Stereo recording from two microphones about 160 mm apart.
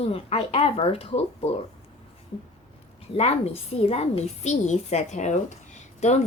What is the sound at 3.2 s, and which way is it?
A woman's voice, 40° left (ahead or behind).